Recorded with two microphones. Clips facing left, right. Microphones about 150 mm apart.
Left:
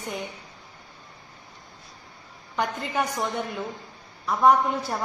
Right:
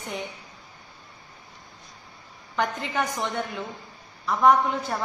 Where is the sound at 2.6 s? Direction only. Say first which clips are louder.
Even; 5° left (ahead or behind).